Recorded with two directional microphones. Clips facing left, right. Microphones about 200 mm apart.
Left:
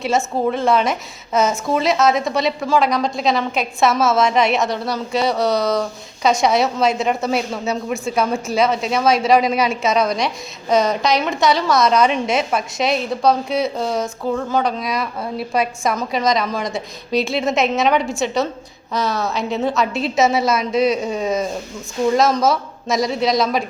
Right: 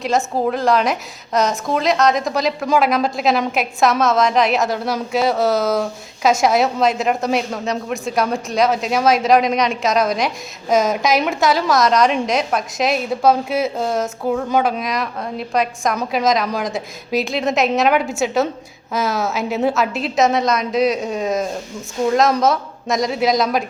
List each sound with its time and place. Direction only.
0.4 s a woman's voice: centre (ahead or behind)